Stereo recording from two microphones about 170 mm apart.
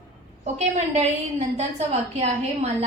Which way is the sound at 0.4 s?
45° right (ahead or behind).